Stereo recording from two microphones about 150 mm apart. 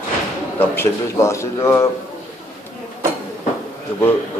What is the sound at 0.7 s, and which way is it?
A man's voice, 15° left (ahead or behind).